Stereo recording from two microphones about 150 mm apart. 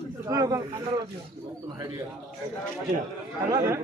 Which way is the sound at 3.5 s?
20° right (ahead or behind).